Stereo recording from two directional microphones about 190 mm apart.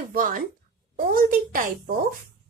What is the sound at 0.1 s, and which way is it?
A woman's voice, 45° right (ahead or behind).